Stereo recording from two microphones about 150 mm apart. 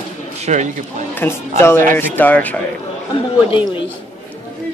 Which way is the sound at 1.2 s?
15° left (ahead or behind).